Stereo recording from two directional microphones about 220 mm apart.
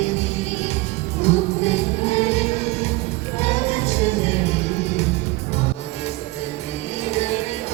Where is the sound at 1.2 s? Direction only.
30° left (ahead or behind).